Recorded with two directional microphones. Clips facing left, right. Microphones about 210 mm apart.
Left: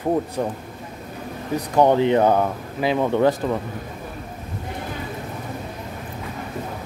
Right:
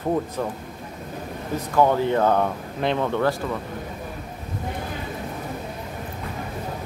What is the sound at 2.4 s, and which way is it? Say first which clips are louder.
Speech: left 2 dB; 5° left (ahead or behind).